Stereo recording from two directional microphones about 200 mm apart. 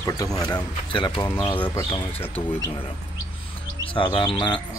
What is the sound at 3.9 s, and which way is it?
Speech, 20° left (ahead or behind).